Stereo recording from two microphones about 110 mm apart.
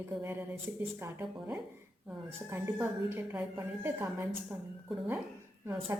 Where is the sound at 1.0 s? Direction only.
25° right (ahead or behind).